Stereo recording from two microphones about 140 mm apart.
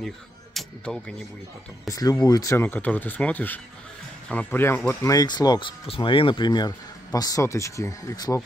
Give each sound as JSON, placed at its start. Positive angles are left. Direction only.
{"t": 0.6, "sound": "speech", "side_deg": 5}
{"t": 1.9, "sound": "speech", "side_deg": 25}